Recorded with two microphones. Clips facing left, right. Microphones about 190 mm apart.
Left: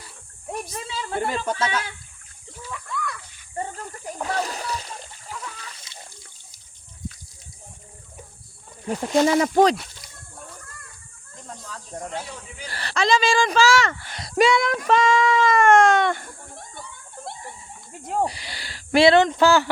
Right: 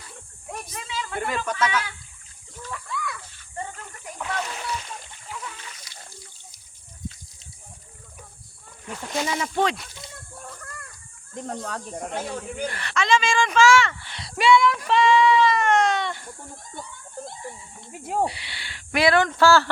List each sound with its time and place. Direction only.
0.7 s a sound: 35° left (ahead or behind)
2.9 s water: centre (ahead or behind)
3.6 s splash: 35° left (ahead or behind)
8.9 s speech: 35° left (ahead or behind)
11.3 s speech: 65° right (ahead or behind)
12.6 s a sound: 35° left (ahead or behind); by 16.6 s 50° left (ahead or behind)
18.0 s speech: 10° right (ahead or behind)
18.3 s speech: 40° left (ahead or behind); by 19.7 s 15° left (ahead or behind)